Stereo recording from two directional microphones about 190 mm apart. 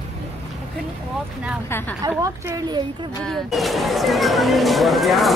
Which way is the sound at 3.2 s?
Centre (ahead or behind).